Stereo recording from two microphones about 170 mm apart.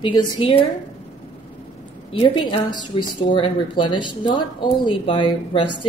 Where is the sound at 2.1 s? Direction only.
30° left (ahead or behind).